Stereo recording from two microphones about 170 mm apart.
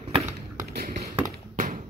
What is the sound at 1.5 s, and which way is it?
Tap, 50° right (ahead or behind).